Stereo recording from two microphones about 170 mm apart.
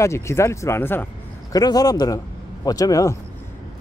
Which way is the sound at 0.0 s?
15° left (ahead or behind).